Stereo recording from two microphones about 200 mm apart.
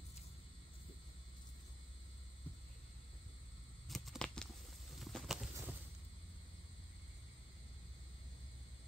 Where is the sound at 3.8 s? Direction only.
Centre (ahead or behind).